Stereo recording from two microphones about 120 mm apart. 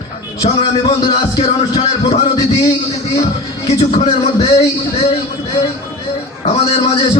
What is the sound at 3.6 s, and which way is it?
A man's voice, 65° left (ahead or behind).